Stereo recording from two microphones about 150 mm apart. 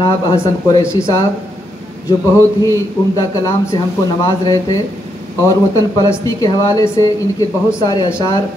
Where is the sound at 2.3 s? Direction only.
25° left (ahead or behind).